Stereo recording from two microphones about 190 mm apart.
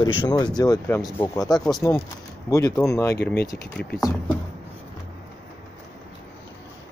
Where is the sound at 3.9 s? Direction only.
20° left (ahead or behind).